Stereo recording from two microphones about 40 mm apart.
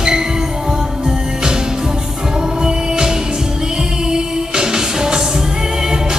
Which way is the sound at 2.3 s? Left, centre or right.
Centre.